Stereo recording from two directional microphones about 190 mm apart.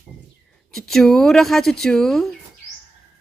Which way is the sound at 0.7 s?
Centre (ahead or behind).